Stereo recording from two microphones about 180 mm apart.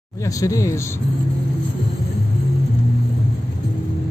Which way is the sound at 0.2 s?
20° left (ahead or behind).